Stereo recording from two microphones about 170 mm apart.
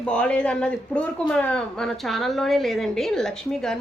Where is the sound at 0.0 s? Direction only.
5° left (ahead or behind).